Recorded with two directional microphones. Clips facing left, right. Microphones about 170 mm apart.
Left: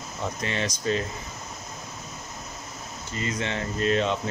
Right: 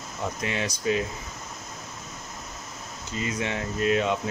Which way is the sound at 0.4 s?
5° right (ahead or behind).